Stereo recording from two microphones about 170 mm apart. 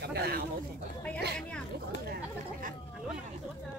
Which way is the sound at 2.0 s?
60° right (ahead or behind).